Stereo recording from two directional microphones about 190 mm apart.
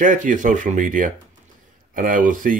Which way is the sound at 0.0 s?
40° right (ahead or behind).